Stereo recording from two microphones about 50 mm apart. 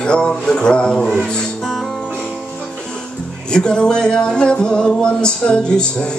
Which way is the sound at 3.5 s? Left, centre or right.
Centre.